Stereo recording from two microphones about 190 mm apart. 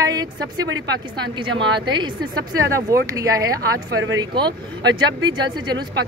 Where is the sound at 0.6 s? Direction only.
75° right (ahead or behind).